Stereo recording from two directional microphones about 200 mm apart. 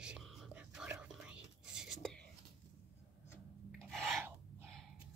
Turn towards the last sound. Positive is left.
turn(degrees=0)  # may be behind; listen again after turning